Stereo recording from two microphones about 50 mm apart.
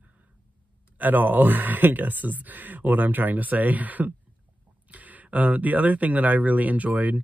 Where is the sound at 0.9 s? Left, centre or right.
Right.